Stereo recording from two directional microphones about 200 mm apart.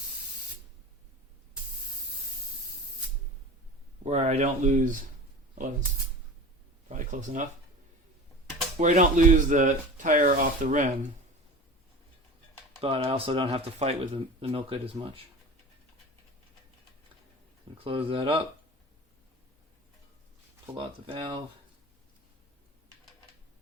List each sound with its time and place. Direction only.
4.0 s speech: 35° right (ahead or behind)
6.8 s speech: 40° right (ahead or behind)
8.8 s speech: 40° right (ahead or behind)
12.8 s speech: 30° right (ahead or behind)
17.8 s speech: 25° right (ahead or behind)
20.7 s speech: 25° right (ahead or behind)